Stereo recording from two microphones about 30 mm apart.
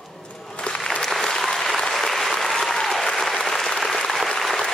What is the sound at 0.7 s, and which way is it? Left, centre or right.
Applause, left.